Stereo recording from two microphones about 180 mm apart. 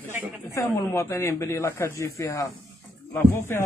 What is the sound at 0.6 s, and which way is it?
A man's voice, 15° left (ahead or behind).